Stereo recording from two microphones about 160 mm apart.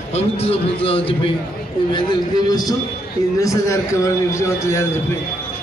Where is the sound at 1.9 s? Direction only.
25° left (ahead or behind).